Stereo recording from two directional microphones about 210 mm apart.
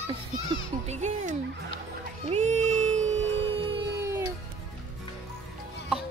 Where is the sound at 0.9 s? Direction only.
35° right (ahead or behind).